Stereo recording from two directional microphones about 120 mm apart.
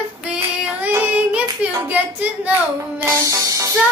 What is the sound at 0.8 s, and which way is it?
Child singing, 15° right (ahead or behind).